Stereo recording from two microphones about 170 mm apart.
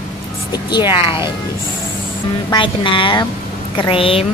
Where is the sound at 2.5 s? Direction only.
30° left (ahead or behind).